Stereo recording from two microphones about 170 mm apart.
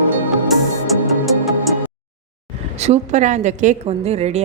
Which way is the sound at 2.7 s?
40° right (ahead or behind).